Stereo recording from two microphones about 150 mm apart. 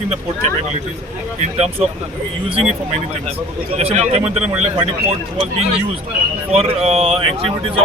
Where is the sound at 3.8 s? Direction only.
45° right (ahead or behind).